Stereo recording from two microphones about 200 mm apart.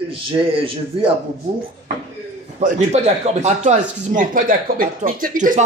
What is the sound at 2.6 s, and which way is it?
Speech, 35° right (ahead or behind).